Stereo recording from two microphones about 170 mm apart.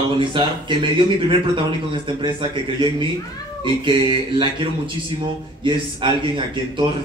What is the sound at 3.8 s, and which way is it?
Speech, 30° right (ahead or behind).